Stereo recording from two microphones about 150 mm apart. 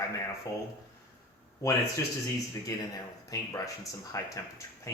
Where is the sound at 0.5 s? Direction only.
20° left (ahead or behind).